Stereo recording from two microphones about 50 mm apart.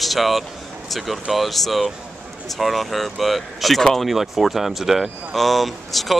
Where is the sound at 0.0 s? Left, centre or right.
Centre.